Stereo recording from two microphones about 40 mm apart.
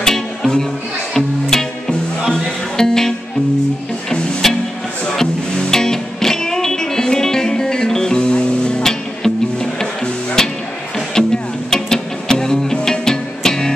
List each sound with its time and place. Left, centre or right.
0.0 s music: centre